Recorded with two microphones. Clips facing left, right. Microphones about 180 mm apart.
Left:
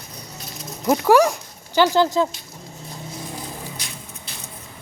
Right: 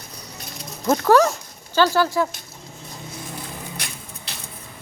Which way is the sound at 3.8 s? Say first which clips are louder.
Right 1 dB; 75° right (ahead or behind).